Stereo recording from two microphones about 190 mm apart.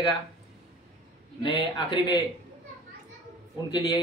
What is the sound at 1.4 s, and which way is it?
Speech, 20° left (ahead or behind).